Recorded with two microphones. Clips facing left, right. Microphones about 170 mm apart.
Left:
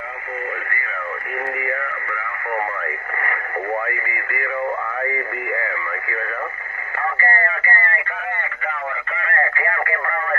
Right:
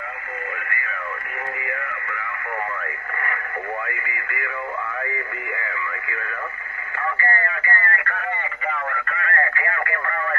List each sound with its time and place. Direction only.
7.2 s radio: 35° left (ahead or behind)
9.2 s radio: 30° left (ahead or behind)